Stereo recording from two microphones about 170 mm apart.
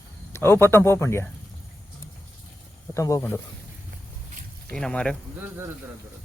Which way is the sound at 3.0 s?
15° left (ahead or behind).